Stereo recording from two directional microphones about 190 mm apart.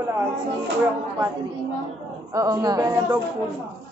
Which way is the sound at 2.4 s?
20° right (ahead or behind).